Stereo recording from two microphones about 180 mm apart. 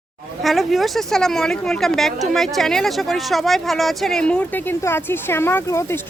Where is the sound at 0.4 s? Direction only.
Centre (ahead or behind).